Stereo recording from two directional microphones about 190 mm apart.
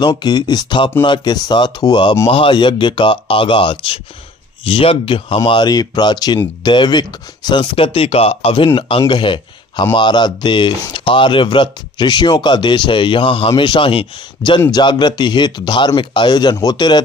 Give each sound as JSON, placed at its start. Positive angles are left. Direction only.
{"t": 0.0, "sound": "speech", "side_deg": 25}